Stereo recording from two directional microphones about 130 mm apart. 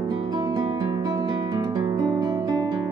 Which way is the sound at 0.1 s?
35° right (ahead or behind).